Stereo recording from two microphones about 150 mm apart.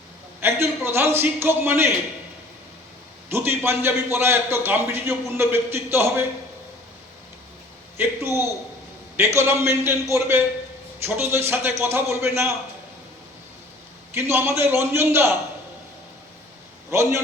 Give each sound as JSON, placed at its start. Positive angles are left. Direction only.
{"t": 0.3, "sound": "a man's voice", "side_deg": -15}
{"t": 3.2, "sound": "a man's voice", "side_deg": -15}
{"t": 7.9, "sound": "a man's voice", "side_deg": -15}
{"t": 14.1, "sound": "a man's voice", "side_deg": -15}
{"t": 16.9, "sound": "a man's voice", "side_deg": -20}